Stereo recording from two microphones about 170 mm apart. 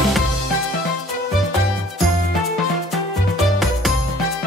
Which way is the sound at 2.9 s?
Centre (ahead or behind).